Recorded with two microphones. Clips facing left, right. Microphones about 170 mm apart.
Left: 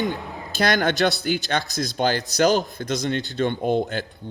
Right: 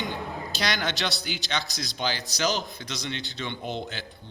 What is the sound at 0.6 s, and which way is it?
A man's voice, 50° left (ahead or behind).